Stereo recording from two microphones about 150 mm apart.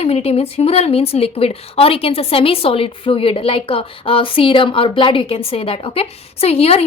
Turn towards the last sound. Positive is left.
turn(degrees=40)  # may be behind; listen again after turning